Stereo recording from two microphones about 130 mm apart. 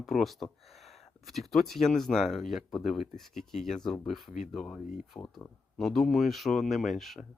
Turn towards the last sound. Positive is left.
turn(degrees=0)  # may be behind; listen again after turning